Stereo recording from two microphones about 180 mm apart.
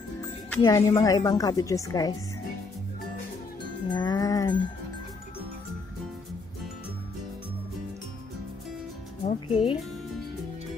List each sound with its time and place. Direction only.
0.6 s speech: 20° left (ahead or behind)
3.9 s speech: 20° left (ahead or behind)
9.2 s speech: 40° left (ahead or behind)